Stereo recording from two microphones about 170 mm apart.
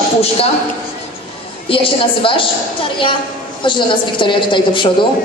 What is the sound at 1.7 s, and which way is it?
Speech, 30° left (ahead or behind).